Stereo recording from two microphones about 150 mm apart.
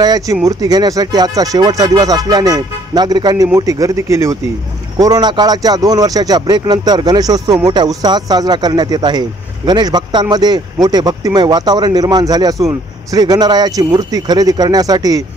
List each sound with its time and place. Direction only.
0.0 s speech: 25° right (ahead or behind)